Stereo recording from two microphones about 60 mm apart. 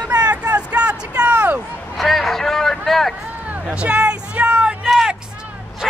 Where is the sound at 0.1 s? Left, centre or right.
Right.